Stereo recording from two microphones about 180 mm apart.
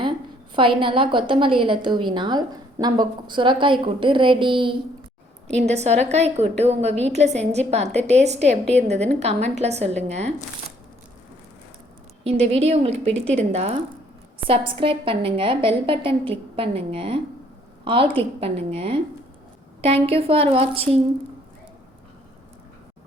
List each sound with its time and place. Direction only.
0.5 s a woman's voice: 30° right (ahead or behind)
12.2 s a woman's voice: 35° right (ahead or behind)
14.4 s a woman's voice: 10° right (ahead or behind)
14.8 s a woman's voice: 30° right (ahead or behind)